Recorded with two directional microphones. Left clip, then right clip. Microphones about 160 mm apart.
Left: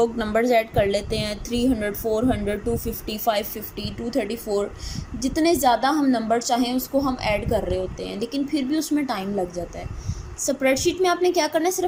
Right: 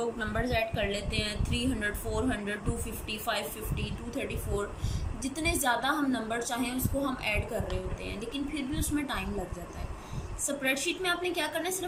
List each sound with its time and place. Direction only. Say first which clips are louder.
0.0 s a woman's voice: left 11 dB; 55° left (ahead or behind)
10.4 s a woman's voice: left 10 dB; 45° left (ahead or behind)